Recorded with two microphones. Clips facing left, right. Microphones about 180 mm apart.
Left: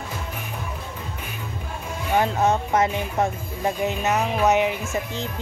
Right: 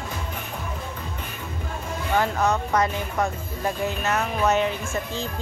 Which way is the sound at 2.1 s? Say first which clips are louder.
Left 2 dB; 25° left (ahead or behind).